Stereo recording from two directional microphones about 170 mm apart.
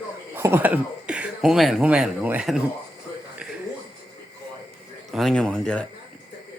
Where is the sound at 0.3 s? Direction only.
15° right (ahead or behind).